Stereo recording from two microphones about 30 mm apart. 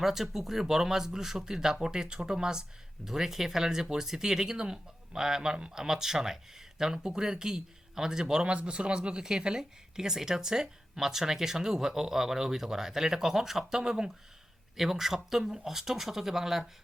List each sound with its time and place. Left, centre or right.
0.0 s speech: centre
3.1 s speech: centre
8.4 s speech: right; by 16.6 s centre